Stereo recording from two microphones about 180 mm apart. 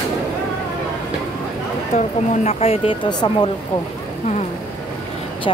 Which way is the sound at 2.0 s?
35° left (ahead or behind).